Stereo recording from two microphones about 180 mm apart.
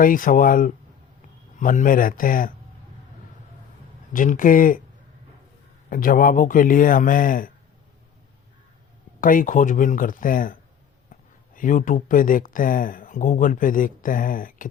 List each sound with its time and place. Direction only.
0.0 s speech: 50° left (ahead or behind)
4.1 s speech: 50° left (ahead or behind)
5.9 s speech: 50° left (ahead or behind)
9.2 s speech: 50° left (ahead or behind)